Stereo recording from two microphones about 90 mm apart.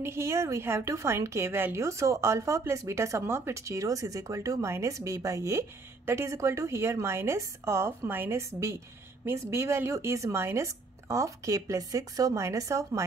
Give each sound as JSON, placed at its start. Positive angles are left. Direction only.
{"t": 0.0, "sound": "a woman's voice", "side_deg": -30}